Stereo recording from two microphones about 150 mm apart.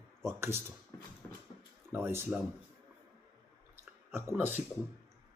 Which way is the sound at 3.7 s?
15° right (ahead or behind).